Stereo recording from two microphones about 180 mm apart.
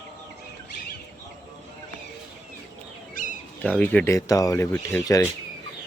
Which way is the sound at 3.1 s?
45° left (ahead or behind).